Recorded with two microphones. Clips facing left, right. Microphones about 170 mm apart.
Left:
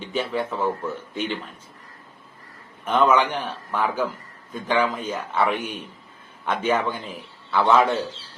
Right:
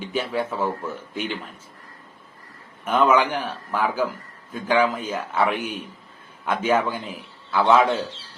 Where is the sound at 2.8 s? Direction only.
10° right (ahead or behind).